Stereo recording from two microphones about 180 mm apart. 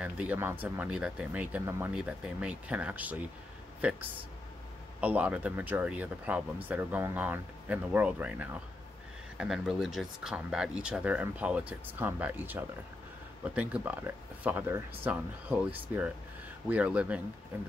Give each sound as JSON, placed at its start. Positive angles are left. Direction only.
{"t": 0.0, "sound": "speech", "side_deg": -10}
{"t": 5.0, "sound": "speech", "side_deg": -10}